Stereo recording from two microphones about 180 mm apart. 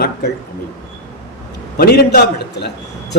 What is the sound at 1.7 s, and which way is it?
Speech, 60° left (ahead or behind).